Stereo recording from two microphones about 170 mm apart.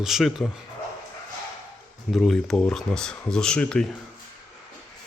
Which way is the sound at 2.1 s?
Centre (ahead or behind).